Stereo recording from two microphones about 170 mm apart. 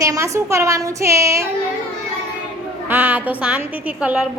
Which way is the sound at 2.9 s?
10° right (ahead or behind).